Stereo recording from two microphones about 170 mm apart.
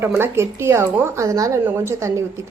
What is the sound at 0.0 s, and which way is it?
A woman's voice, 15° right (ahead or behind).